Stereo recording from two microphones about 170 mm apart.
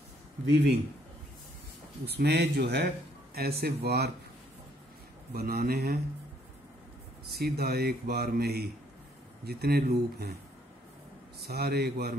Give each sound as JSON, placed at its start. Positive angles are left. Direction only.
{"t": 0.5, "sound": "a man's voice", "side_deg": -85}
{"t": 2.0, "sound": "speech", "side_deg": -70}
{"t": 5.3, "sound": "speech", "side_deg": -60}
{"t": 7.2, "sound": "speech", "side_deg": -65}
{"t": 11.4, "sound": "speech", "side_deg": -65}